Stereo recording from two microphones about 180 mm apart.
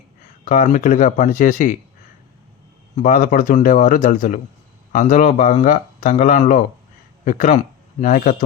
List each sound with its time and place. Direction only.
0.4 s speech: 45° left (ahead or behind)
3.0 s speech: 45° left (ahead or behind)